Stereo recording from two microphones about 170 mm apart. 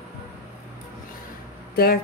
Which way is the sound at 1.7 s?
65° left (ahead or behind).